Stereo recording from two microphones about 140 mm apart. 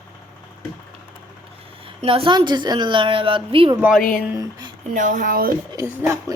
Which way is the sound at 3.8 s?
10° right (ahead or behind).